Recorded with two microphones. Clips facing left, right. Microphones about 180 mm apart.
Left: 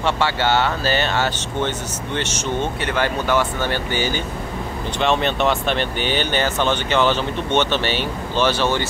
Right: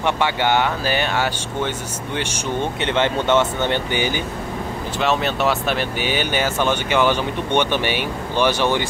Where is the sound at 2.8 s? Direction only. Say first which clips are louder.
Right 2 dB; 20° right (ahead or behind).